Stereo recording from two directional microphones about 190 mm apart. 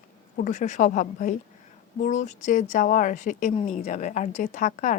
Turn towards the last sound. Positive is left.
turn(degrees=45)  # may be behind; listen again after turning